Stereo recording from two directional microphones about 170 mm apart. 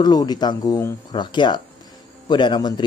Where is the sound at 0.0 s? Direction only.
25° left (ahead or behind).